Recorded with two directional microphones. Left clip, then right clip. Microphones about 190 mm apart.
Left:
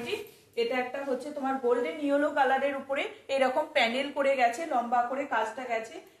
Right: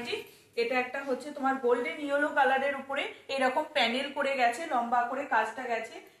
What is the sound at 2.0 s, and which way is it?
A woman's voice, 25° left (ahead or behind).